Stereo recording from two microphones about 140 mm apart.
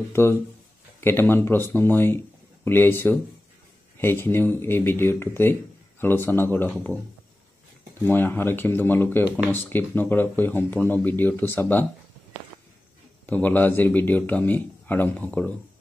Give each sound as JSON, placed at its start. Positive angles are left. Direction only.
{"t": 0.1, "sound": "speech", "side_deg": 20}
{"t": 8.0, "sound": "speech", "side_deg": 15}
{"t": 13.3, "sound": "speech", "side_deg": 15}